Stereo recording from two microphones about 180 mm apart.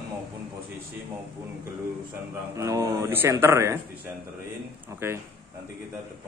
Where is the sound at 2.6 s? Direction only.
20° right (ahead or behind).